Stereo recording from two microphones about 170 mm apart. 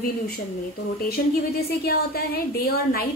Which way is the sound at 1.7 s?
65° left (ahead or behind).